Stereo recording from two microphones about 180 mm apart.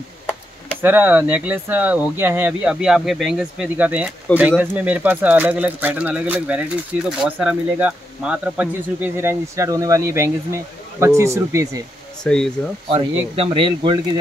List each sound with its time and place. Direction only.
0.8 s speech: 10° right (ahead or behind)
12.2 s speech: 5° left (ahead or behind)
12.9 s speech: 30° right (ahead or behind)